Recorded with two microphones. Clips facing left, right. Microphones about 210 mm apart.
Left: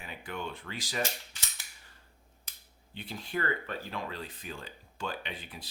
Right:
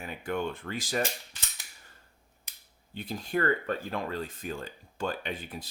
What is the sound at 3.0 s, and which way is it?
Speech, 45° right (ahead or behind).